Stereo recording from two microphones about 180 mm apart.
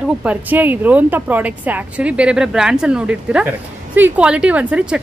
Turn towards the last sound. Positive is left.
turn(degrees=-5)  # may be behind; listen again after turning